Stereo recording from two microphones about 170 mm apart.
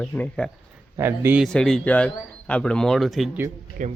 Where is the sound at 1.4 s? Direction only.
5° left (ahead or behind).